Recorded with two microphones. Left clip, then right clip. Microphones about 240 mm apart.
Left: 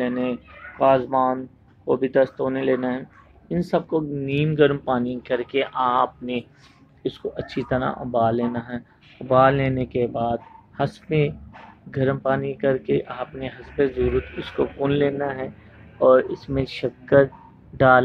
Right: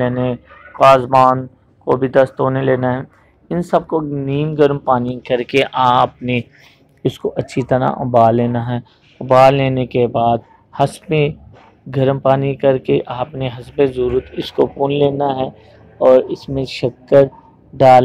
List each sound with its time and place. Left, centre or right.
0.0 s speech: centre
16.1 s speech: centre